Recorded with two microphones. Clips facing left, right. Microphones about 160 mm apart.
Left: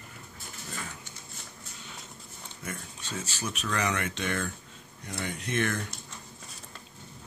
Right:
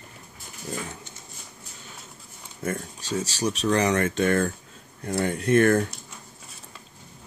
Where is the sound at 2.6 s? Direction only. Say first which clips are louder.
Right 10 dB; 40° right (ahead or behind).